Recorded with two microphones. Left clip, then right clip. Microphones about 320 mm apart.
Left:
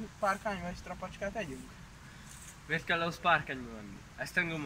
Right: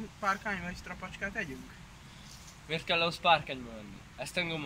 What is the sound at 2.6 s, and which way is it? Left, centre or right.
Speech, centre.